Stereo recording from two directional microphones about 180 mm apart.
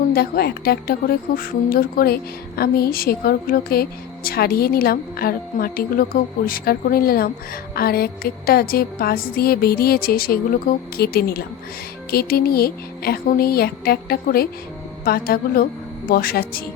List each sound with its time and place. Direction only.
0.1 s a woman's voice: 60° left (ahead or behind)